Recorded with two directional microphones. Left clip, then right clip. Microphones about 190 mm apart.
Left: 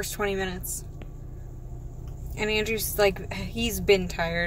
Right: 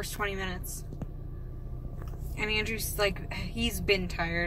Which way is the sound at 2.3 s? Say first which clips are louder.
Left 4 dB; 30° left (ahead or behind).